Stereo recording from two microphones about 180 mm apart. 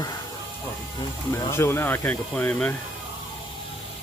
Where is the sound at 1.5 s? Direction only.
15° left (ahead or behind).